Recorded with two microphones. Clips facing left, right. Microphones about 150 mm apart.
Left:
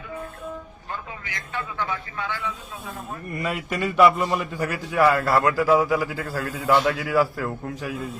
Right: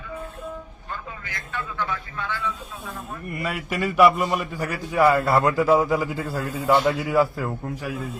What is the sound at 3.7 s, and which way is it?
A man's voice, 5° right (ahead or behind).